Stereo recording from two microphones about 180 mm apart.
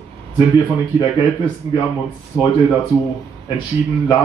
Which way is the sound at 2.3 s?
20° left (ahead or behind).